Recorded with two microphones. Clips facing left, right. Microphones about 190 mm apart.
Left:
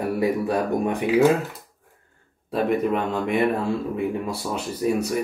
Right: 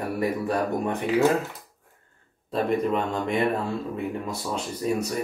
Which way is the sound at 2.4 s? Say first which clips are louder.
Left 2 dB; 5° left (ahead or behind).